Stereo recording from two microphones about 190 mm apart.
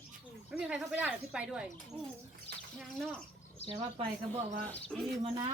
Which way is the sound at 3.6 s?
35° left (ahead or behind).